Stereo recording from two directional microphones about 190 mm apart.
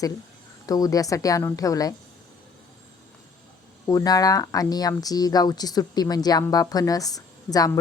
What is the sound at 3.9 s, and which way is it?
Speech, 20° left (ahead or behind).